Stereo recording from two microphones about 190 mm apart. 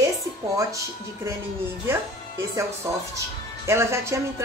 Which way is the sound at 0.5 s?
15° right (ahead or behind).